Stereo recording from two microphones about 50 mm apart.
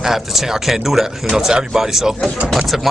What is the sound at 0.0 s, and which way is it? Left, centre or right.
Speech, centre.